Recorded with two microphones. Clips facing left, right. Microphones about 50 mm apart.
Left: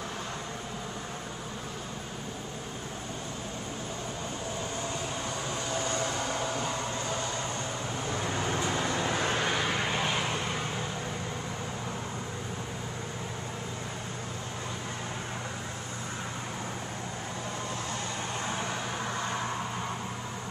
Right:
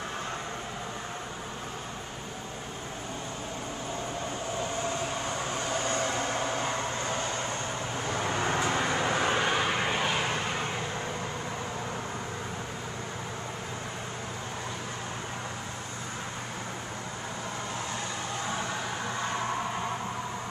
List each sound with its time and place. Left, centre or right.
5.7 s vehicle: right; by 10.3 s centre
19.1 s vehicle: centre